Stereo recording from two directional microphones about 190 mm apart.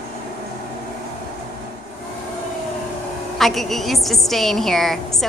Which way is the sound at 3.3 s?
Centre (ahead or behind).